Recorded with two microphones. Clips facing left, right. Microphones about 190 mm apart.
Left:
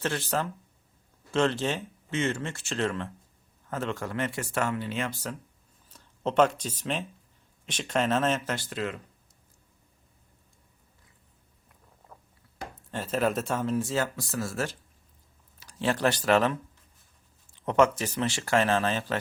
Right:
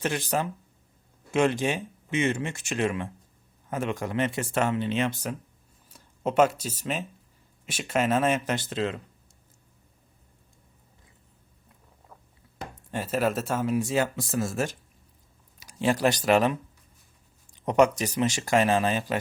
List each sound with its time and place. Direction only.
0.0 s speech: 15° right (ahead or behind)
12.9 s speech: 10° right (ahead or behind)